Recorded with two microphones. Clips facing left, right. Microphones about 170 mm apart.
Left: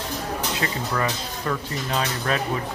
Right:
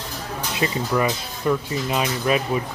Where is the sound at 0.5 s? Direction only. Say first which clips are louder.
Right 8 dB; 15° right (ahead or behind).